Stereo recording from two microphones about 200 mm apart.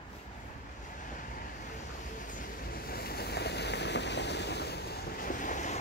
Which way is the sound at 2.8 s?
50° left (ahead or behind).